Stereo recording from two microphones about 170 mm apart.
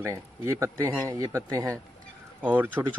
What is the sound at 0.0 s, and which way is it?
Speech, 15° right (ahead or behind).